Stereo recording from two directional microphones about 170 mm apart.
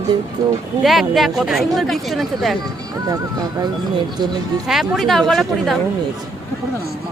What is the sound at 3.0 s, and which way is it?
Speech, 20° right (ahead or behind).